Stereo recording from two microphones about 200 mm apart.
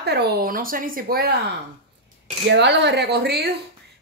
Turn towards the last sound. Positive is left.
turn(degrees=-55)  # may be behind; listen again after turning